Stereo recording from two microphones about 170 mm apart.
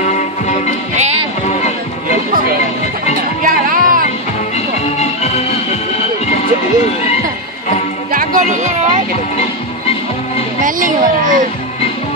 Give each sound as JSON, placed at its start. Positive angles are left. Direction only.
{"t": 0.0, "sound": "music", "side_deg": 45}
{"t": 0.9, "sound": "music", "side_deg": -40}
{"t": 2.3, "sound": "speech", "side_deg": -60}
{"t": 3.2, "sound": "music", "side_deg": -55}
{"t": 4.6, "sound": "music", "side_deg": 40}
{"t": 8.1, "sound": "music", "side_deg": -50}
{"t": 10.6, "sound": "speech", "side_deg": -50}